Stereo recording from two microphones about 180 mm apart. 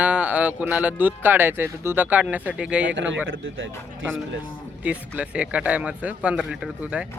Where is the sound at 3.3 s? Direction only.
90° right.